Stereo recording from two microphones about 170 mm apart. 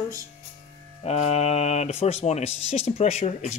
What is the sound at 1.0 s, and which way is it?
Speech, 40° left (ahead or behind).